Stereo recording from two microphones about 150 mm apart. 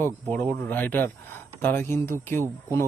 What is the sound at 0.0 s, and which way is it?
Speech, 10° left (ahead or behind).